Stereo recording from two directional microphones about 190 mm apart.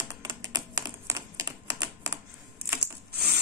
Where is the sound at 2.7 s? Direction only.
60° right (ahead or behind).